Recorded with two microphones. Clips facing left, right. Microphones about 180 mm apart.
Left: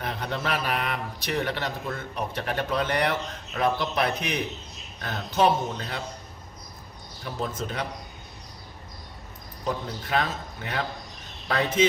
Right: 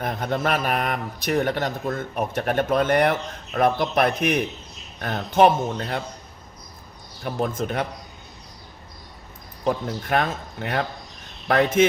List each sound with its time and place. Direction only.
0.0 s speech: 50° right (ahead or behind)
7.3 s speech: 50° right (ahead or behind)
9.6 s speech: 50° right (ahead or behind)